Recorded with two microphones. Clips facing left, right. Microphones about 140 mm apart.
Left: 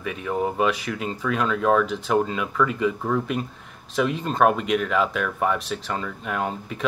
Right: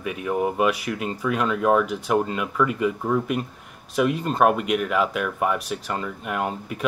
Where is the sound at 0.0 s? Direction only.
5° right (ahead or behind).